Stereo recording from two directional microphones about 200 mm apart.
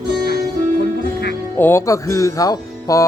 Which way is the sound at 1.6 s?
15° left (ahead or behind).